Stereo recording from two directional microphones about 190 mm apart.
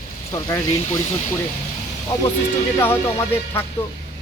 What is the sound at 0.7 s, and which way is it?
Speech, 35° left (ahead or behind).